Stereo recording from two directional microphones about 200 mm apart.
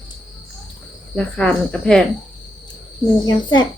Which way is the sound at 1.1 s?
5° left (ahead or behind).